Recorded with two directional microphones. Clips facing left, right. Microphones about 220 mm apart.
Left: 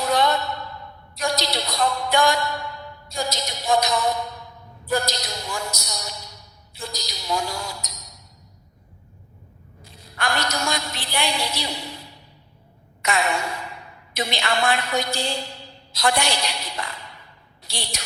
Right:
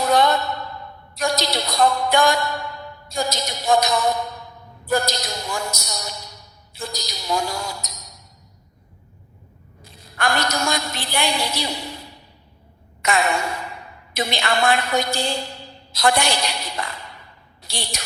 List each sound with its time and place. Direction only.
0.0 s a sound: 50° right (ahead or behind)
4.9 s speech: 50° right (ahead or behind)
9.8 s a woman's voice: 50° right (ahead or behind)